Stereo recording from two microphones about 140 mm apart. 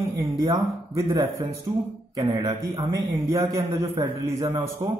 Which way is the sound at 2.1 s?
30° right (ahead or behind).